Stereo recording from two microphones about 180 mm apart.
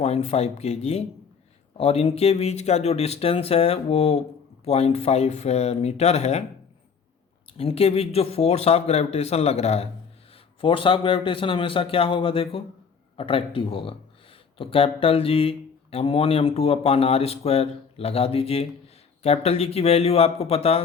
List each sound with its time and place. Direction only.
0.0 s speech: 35° left (ahead or behind)
7.5 s a man's voice: 30° left (ahead or behind)